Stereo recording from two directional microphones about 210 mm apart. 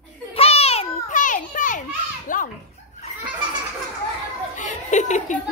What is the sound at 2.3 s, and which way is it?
Speech, 40° left (ahead or behind).